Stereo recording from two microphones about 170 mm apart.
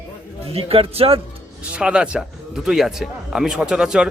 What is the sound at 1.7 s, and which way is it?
Speech, 5° right (ahead or behind).